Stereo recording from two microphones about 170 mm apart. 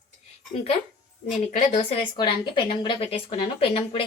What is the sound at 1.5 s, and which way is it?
Speech, 45° left (ahead or behind).